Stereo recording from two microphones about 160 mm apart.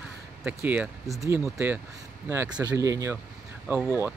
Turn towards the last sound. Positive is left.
turn(degrees=-10)  # may be behind; listen again after turning